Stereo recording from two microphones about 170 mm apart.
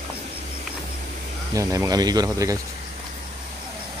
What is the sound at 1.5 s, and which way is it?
Speech, 20° right (ahead or behind).